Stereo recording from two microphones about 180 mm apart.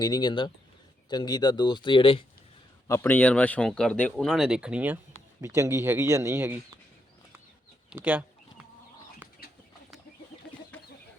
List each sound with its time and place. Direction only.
0.0 s speech: 25° left (ahead or behind)
2.8 s speech: 15° left (ahead or behind); by 6.7 s 15° right (ahead or behind)
7.9 s speech: 10° right (ahead or behind)